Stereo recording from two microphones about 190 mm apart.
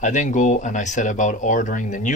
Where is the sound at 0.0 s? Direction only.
40° left (ahead or behind).